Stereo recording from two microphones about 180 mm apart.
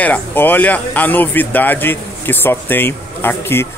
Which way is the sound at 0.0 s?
10° left (ahead or behind).